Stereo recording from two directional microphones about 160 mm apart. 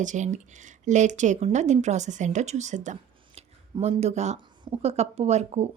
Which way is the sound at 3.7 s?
35° right (ahead or behind).